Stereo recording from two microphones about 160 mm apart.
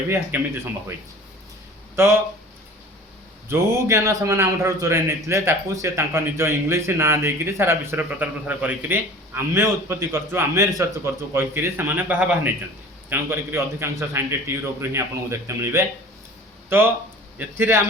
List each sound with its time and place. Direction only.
0.1 s a man's voice: 10° right (ahead or behind)
2.0 s a man's voice: 15° right (ahead or behind)
3.5 s a man's voice: 15° right (ahead or behind)